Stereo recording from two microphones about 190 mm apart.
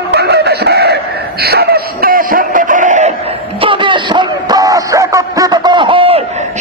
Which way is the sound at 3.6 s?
25° right (ahead or behind).